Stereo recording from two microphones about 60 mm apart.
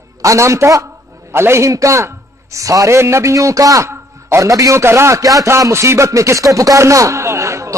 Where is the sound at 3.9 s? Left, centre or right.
Right.